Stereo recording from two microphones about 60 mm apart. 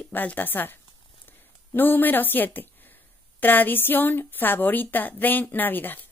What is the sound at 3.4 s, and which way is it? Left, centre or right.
A woman's voice, left.